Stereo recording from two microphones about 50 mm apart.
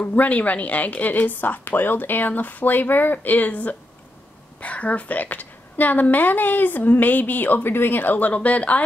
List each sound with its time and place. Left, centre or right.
0.0 s a woman's voice: left